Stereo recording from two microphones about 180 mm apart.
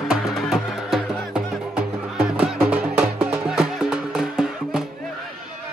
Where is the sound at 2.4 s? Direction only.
5° right (ahead or behind).